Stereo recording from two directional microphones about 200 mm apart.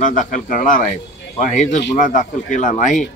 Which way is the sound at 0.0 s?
40° left (ahead or behind).